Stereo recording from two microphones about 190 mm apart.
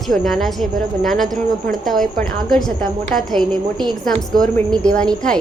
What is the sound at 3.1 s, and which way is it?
A woman's voice, centre (ahead or behind).